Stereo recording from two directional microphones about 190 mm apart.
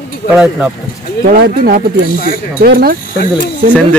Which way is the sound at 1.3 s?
55° right (ahead or behind).